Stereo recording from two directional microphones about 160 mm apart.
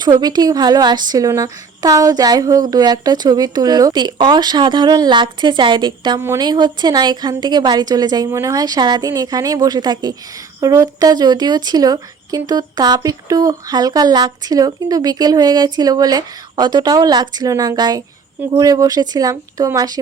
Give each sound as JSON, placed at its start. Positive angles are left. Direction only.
{"t": 0.0, "sound": "a woman's voice", "side_deg": -25}
{"t": 6.1, "sound": "a woman's voice", "side_deg": -15}